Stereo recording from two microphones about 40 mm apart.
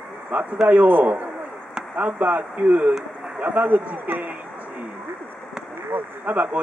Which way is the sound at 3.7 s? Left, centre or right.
Right.